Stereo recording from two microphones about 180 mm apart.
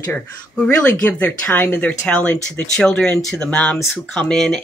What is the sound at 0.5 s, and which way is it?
Speech, 10° left (ahead or behind).